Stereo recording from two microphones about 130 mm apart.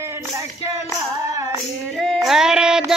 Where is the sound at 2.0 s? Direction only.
Centre (ahead or behind).